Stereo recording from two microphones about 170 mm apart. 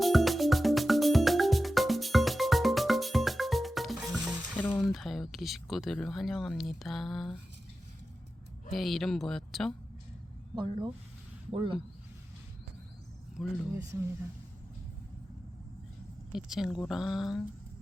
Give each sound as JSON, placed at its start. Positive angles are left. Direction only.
{"t": 0.0, "sound": "music", "side_deg": 0}
{"t": 4.6, "sound": "speech", "side_deg": 5}
{"t": 8.7, "sound": "a woman's voice", "side_deg": 0}
{"t": 10.5, "sound": "speech", "side_deg": -25}
{"t": 16.3, "sound": "a woman's voice", "side_deg": 0}